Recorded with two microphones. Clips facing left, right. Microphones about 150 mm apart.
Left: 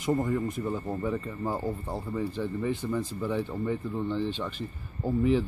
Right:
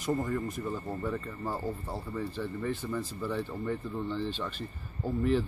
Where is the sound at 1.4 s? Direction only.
20° left (ahead or behind).